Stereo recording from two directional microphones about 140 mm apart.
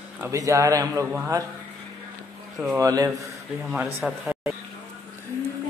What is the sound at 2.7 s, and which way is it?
Speech, 25° right (ahead or behind).